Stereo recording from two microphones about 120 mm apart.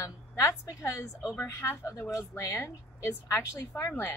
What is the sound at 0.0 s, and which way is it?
A woman's voice, 25° left (ahead or behind).